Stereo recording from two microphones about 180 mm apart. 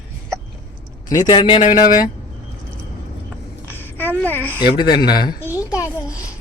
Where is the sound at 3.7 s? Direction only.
10° left (ahead or behind).